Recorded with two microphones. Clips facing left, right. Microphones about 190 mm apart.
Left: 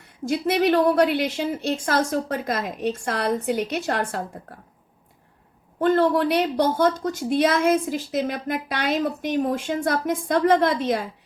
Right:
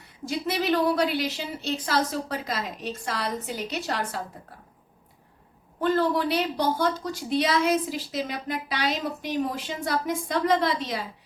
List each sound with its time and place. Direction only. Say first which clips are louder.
0.3 s a woman's voice: left 6 dB; 55° left (ahead or behind)
5.8 s a woman's voice: left 5 dB; 55° left (ahead or behind)